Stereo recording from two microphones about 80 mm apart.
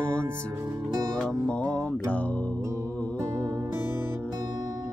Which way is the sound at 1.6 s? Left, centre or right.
Right.